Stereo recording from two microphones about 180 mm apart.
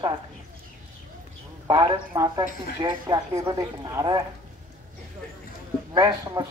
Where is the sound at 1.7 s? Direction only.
20° right (ahead or behind).